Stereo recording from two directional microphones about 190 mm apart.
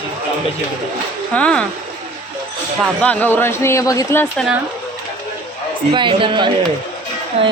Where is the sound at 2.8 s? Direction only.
5° left (ahead or behind).